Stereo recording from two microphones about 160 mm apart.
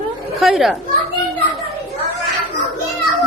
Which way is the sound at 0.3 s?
Centre (ahead or behind).